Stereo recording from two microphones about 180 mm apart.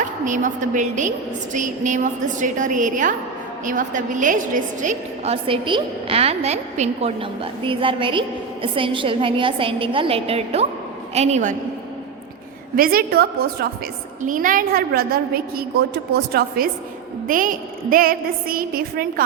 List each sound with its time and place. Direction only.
0.3 s a woman's voice: 45° right (ahead or behind)
12.7 s a woman's voice: 55° right (ahead or behind)
14.2 s a woman's voice: 50° right (ahead or behind)
17.2 s a woman's voice: 50° right (ahead or behind)